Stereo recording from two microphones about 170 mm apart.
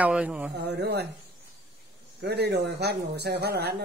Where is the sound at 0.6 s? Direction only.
80° right.